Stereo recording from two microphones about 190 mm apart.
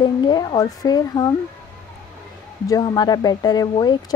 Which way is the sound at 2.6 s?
20° left (ahead or behind).